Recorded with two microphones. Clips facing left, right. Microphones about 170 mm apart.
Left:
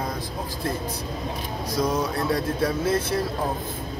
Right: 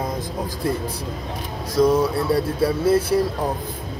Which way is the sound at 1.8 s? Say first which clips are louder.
Right 8 dB; 5° right (ahead or behind).